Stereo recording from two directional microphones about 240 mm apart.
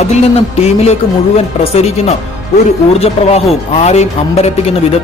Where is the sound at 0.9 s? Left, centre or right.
Left.